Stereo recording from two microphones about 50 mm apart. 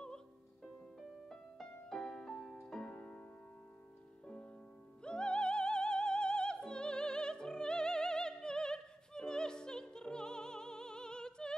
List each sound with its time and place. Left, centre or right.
1.3 s music: centre
5.0 s music: centre